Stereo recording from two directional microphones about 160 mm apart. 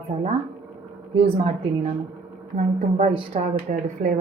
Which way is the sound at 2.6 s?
50° right (ahead or behind).